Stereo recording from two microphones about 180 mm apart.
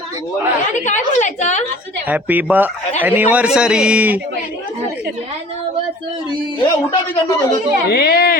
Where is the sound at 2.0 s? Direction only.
10° right (ahead or behind).